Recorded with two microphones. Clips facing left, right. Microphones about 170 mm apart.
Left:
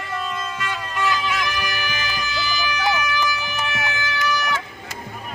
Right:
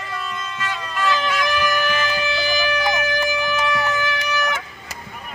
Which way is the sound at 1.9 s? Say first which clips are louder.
Right 6 dB; 60° right (ahead or behind).